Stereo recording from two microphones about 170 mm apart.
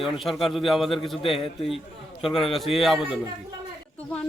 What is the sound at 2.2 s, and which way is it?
A woman's voice, centre (ahead or behind).